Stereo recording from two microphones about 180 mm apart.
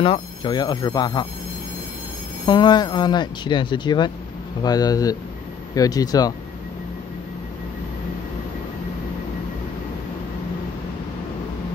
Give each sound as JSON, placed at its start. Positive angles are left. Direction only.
{"t": 0.0, "sound": "speech", "side_deg": 25}
{"t": 2.4, "sound": "speech", "side_deg": 25}